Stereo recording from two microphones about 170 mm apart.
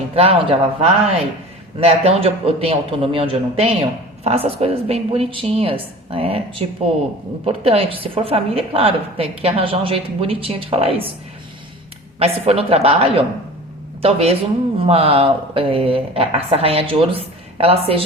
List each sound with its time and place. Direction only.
0.2 s a man's voice: 35° right (ahead or behind)
12.2 s a man's voice: 35° right (ahead or behind)